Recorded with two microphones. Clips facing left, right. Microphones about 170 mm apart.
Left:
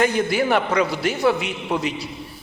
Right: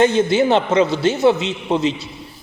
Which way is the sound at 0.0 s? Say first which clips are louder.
Right 5 dB; 25° right (ahead or behind).